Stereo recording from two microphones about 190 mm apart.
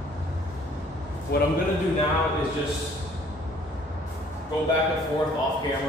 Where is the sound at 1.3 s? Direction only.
55° left (ahead or behind).